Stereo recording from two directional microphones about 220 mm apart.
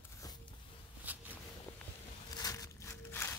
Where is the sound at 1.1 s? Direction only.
5° right (ahead or behind).